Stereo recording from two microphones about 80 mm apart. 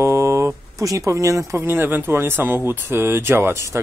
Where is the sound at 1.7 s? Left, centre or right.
Right.